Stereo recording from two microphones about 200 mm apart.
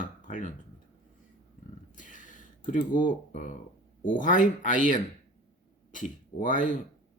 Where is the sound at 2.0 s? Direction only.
40° left (ahead or behind).